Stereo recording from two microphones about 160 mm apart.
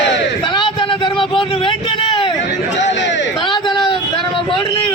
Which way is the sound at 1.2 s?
35° left (ahead or behind).